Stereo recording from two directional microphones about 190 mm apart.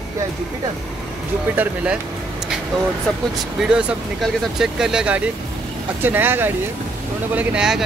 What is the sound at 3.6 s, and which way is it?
Speech, 5° right (ahead or behind).